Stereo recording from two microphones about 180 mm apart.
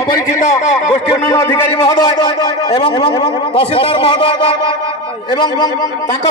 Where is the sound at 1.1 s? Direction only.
15° left (ahead or behind).